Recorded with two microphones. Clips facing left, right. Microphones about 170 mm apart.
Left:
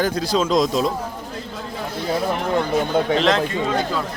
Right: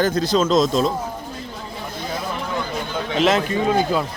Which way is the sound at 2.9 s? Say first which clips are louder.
Left 8 dB; 55° left (ahead or behind).